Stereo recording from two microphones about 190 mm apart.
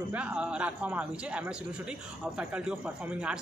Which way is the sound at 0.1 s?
5° right (ahead or behind).